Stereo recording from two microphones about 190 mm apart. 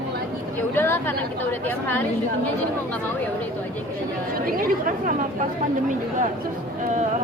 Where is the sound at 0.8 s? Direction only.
10° left (ahead or behind).